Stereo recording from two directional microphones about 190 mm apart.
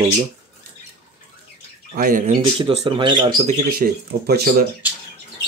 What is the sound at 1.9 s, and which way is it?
Speech, 45° right (ahead or behind).